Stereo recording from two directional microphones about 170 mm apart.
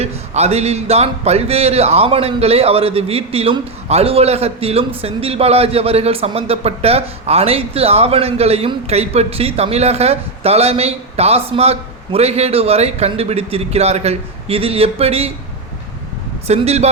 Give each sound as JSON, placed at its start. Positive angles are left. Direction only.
{"t": 0.0, "sound": "speech", "side_deg": -40}
{"t": 16.5, "sound": "speech", "side_deg": -40}